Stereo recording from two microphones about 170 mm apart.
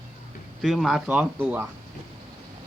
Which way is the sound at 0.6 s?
Centre (ahead or behind).